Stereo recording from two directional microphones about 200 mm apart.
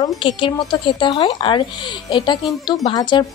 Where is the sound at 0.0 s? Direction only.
25° left (ahead or behind).